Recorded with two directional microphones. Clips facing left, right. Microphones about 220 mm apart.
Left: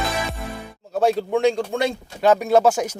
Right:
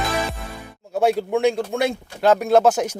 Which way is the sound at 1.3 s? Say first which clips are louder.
Even; 5° right (ahead or behind).